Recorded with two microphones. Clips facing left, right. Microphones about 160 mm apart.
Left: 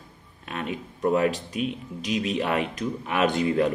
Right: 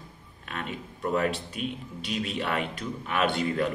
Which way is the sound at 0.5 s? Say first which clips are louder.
Left 4 dB; 25° left (ahead or behind).